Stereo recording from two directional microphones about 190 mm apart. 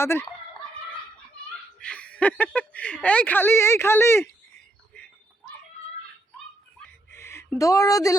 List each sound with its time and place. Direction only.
0.0 s speech: 15° left (ahead or behind)
1.8 s speech: 5° left (ahead or behind)
7.1 s a sound: 15° left (ahead or behind)